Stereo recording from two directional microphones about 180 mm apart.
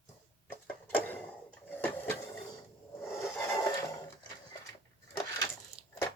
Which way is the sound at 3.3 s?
15° left (ahead or behind).